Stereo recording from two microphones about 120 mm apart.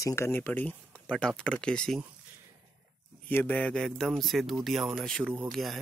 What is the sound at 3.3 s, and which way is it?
Speech, 15° left (ahead or behind).